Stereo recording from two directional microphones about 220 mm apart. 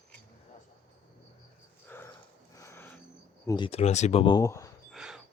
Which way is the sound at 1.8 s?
10° left (ahead or behind).